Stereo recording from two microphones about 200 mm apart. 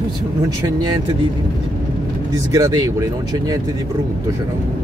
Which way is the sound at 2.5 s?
15° right (ahead or behind).